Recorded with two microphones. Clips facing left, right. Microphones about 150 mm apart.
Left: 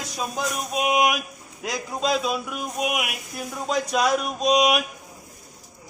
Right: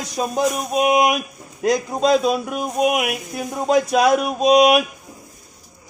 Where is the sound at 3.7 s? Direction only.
5° right (ahead or behind).